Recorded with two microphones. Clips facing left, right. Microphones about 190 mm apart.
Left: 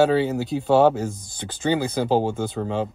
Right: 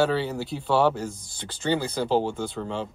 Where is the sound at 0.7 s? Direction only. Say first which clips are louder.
Left 5 dB; 50° left (ahead or behind).